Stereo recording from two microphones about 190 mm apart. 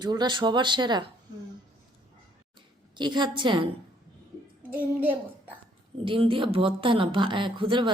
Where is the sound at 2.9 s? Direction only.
25° right (ahead or behind).